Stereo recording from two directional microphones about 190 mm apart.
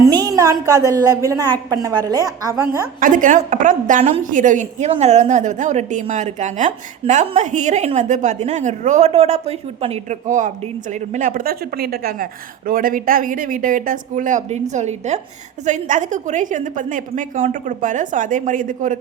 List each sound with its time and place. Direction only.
0.0 s a sound: 20° right (ahead or behind)
0.6 s a woman's voice: 20° right (ahead or behind)
3.0 s a woman's voice: 45° right (ahead or behind)